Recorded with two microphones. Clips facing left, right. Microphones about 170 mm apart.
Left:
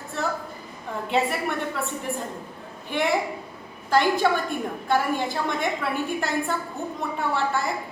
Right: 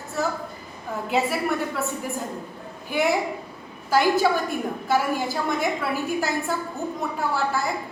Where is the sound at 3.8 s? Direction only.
5° right (ahead or behind).